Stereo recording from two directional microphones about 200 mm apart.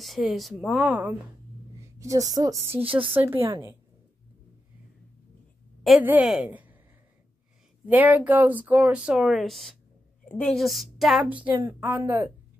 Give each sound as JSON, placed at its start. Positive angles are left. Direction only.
{"t": 0.0, "sound": "speech", "side_deg": 0}
{"t": 1.8, "sound": "a woman's voice", "side_deg": -15}
{"t": 5.9, "sound": "a woman's voice", "side_deg": -5}
{"t": 7.8, "sound": "speech", "side_deg": -10}